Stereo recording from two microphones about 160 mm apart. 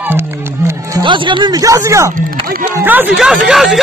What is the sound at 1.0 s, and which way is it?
Speech, 30° right (ahead or behind).